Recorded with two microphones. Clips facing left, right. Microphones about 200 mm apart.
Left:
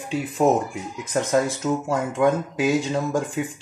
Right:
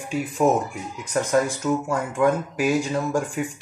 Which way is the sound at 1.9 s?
20° left (ahead or behind).